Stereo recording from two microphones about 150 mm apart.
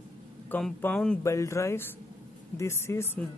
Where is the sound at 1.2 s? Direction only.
20° left (ahead or behind).